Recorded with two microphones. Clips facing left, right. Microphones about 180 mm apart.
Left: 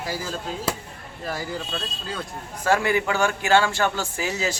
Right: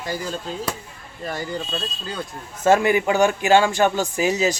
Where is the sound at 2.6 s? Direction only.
20° right (ahead or behind).